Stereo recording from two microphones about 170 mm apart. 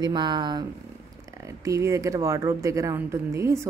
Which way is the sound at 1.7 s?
15° right (ahead or behind).